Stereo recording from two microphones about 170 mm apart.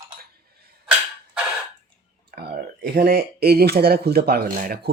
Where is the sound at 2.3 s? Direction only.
70° right (ahead or behind).